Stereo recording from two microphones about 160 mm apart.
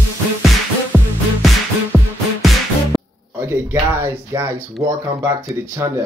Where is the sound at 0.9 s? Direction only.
10° right (ahead or behind).